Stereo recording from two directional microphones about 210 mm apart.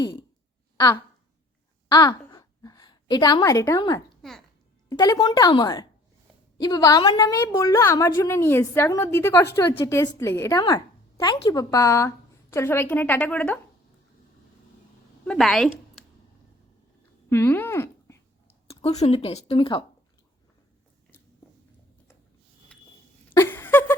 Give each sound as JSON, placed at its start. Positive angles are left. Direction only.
{"t": 0.0, "sound": "a woman's voice", "side_deg": 20}
{"t": 1.9, "sound": "a sound", "side_deg": 20}
{"t": 4.2, "sound": "a child's voice", "side_deg": 0}
{"t": 4.9, "sound": "a woman's voice", "side_deg": 15}
{"t": 15.3, "sound": "speech", "side_deg": 0}
{"t": 17.2, "sound": "speech", "side_deg": 10}
{"t": 18.8, "sound": "speech", "side_deg": 30}
{"t": 23.3, "sound": "a sound", "side_deg": 10}